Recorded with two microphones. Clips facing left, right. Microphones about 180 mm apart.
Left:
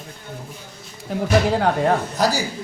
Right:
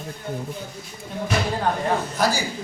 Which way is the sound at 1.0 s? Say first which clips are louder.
Left 6 dB; 75° left (ahead or behind).